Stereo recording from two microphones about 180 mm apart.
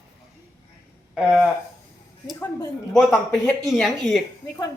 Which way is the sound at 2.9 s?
5° left (ahead or behind).